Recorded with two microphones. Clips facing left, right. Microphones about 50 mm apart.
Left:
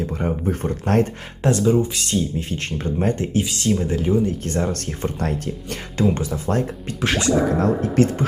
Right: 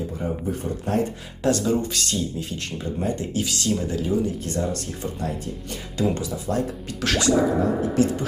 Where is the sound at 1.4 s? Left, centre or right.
Left.